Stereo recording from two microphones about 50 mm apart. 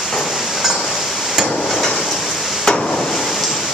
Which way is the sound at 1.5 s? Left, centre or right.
Centre.